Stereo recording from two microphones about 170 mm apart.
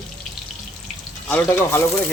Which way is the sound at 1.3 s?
15° left (ahead or behind).